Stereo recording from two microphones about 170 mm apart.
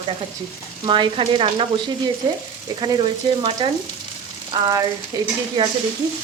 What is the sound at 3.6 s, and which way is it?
Speech, 25° right (ahead or behind).